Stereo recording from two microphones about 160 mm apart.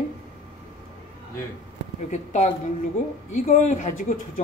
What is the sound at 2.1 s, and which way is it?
Speech, 45° left (ahead or behind).